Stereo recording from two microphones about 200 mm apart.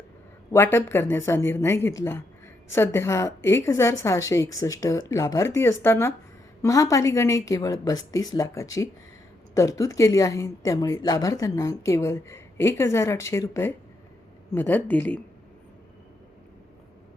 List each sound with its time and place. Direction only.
0.5 s a woman's voice: 10° left (ahead or behind)